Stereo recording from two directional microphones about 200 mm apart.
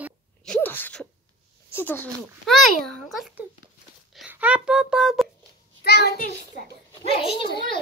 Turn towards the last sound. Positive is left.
turn(degrees=25)  # may be behind; listen again after turning